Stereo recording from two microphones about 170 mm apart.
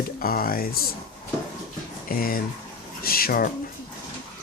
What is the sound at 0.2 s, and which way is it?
Speech, 60° left (ahead or behind).